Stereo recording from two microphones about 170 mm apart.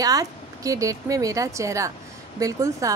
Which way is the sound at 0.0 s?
20° right (ahead or behind).